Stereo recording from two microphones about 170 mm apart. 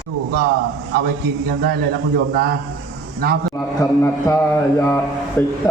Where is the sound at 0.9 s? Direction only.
60° right (ahead or behind).